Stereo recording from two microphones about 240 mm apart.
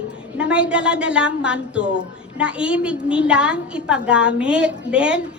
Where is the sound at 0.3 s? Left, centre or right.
Centre.